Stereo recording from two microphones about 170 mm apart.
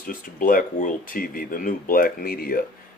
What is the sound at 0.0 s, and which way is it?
Speech, 55° left (ahead or behind).